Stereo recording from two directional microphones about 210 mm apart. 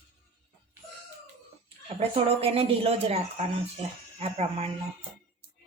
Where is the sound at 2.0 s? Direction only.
25° right (ahead or behind).